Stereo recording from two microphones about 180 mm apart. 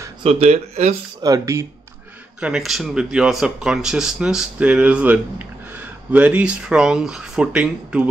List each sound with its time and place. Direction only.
0.2 s speech: 35° right (ahead or behind)
1.2 s speech: 20° right (ahead or behind)
2.4 s speech: centre (ahead or behind)